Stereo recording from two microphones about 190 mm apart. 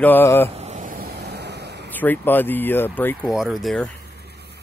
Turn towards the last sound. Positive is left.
turn(degrees=0)  # may be behind; listen again after turning